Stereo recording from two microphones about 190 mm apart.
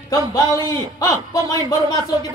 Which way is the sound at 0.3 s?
15° left (ahead or behind).